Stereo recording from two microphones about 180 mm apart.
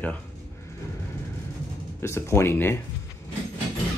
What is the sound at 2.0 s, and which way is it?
Speech, 15° left (ahead or behind).